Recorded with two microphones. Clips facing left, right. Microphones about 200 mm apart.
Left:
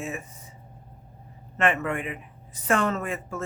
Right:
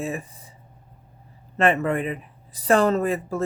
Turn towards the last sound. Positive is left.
turn(degrees=-35)  # may be behind; listen again after turning